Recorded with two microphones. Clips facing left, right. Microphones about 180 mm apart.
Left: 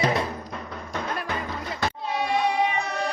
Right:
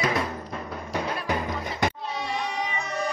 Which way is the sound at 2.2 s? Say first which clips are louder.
Left 8 dB; 60° left (ahead or behind).